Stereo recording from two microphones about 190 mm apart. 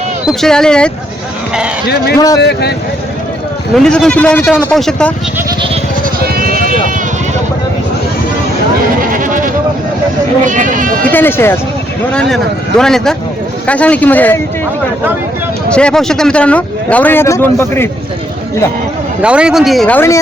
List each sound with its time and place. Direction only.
0.3 s speech: 5° left (ahead or behind)
2.1 s a man's voice: 20° left (ahead or behind)
2.4 s a man's voice: 60° left (ahead or behind)
3.8 s speech: 5° left (ahead or behind)
9.0 s sheep: 45° right (ahead or behind)
10.4 s speech: 40° right (ahead or behind)
11.1 s speech: 10° left (ahead or behind)
15.7 s speech: 5° left (ahead or behind)
19.2 s speech: 5° right (ahead or behind); by 20.1 s 10° left (ahead or behind)